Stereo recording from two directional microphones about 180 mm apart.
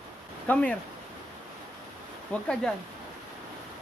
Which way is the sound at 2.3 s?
5° left (ahead or behind).